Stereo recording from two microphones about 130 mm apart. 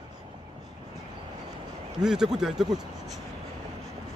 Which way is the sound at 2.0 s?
5° right (ahead or behind).